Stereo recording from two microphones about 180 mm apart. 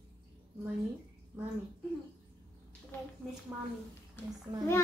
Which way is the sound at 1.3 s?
15° right (ahead or behind).